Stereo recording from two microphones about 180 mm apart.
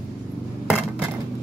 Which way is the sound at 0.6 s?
5° right (ahead or behind).